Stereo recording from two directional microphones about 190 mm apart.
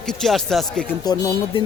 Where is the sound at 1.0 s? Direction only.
20° left (ahead or behind).